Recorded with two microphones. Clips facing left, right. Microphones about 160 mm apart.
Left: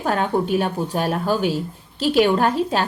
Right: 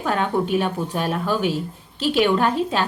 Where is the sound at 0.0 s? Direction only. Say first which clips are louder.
Left 1 dB; 40° left (ahead or behind).